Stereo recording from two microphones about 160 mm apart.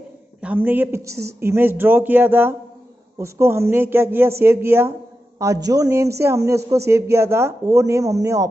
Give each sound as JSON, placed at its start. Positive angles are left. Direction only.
{"t": 0.4, "sound": "speech", "side_deg": -10}